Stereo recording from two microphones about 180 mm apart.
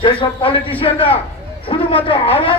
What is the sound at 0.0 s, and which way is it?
A man's voice, 30° left (ahead or behind).